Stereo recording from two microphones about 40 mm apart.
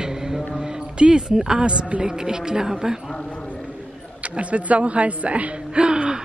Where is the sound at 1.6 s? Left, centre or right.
Right.